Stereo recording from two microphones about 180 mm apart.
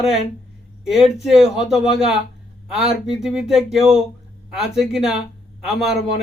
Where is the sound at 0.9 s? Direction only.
Centre (ahead or behind).